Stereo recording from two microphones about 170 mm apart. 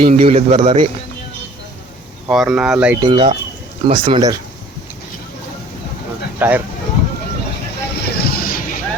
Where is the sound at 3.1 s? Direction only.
30° right (ahead or behind).